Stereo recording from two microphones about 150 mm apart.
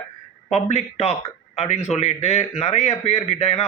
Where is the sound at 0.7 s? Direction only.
45° left (ahead or behind).